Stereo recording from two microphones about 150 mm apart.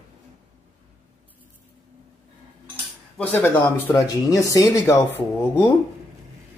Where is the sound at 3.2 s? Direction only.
10° left (ahead or behind).